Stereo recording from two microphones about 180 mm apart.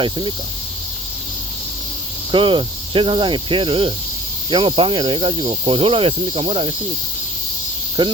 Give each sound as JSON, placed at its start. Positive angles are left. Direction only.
{"t": 0.0, "sound": "speech", "side_deg": -30}
{"t": 2.3, "sound": "speech", "side_deg": -30}
{"t": 8.0, "sound": "speech", "side_deg": -25}